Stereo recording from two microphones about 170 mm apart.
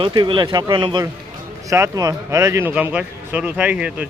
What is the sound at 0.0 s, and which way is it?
Speech, 30° right (ahead or behind).